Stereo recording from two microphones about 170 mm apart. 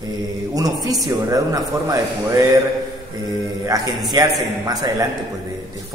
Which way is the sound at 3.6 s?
20° right (ahead or behind).